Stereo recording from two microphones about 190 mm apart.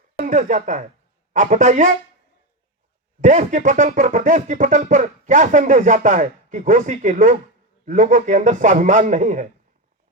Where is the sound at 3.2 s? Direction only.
40° right (ahead or behind).